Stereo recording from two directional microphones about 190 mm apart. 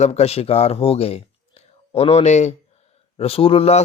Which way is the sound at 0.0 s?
35° left (ahead or behind).